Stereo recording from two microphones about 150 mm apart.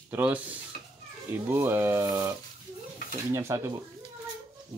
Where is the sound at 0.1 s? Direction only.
10° right (ahead or behind).